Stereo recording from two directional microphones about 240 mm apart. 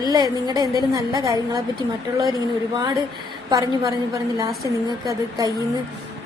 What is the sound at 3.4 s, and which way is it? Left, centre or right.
A woman's voice, centre.